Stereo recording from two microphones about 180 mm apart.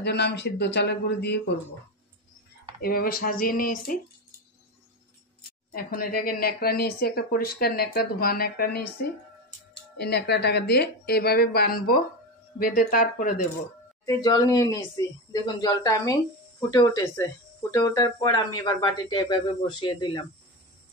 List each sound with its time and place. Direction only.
0.0 s a man's voice: 70° left (ahead or behind)
2.8 s speech: 55° left (ahead or behind)
5.7 s speech: 55° left (ahead or behind)
9.9 s speech: 65° left (ahead or behind); by 13.5 s 45° left (ahead or behind)
14.0 s speech: 20° left (ahead or behind)